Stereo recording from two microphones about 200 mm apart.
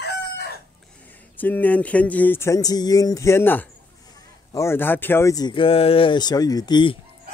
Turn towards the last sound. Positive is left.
turn(degrees=20)  # may be behind; listen again after turning